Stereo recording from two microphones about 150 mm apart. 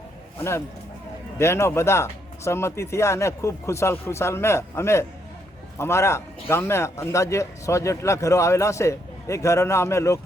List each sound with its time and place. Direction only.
0.3 s a man's voice: 15° left (ahead or behind)